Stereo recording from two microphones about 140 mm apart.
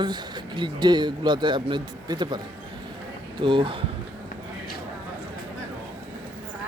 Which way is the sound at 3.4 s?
35° right (ahead or behind).